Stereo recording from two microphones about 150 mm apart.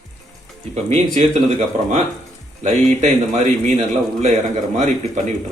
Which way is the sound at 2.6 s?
50° right (ahead or behind).